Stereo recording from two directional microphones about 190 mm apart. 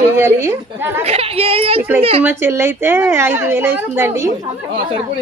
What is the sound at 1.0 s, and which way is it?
Speech, 30° right (ahead or behind).